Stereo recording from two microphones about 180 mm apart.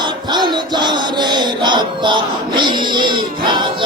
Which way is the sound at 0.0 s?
25° right (ahead or behind).